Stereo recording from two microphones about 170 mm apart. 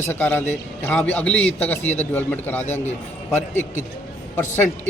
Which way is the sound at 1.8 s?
40° left (ahead or behind).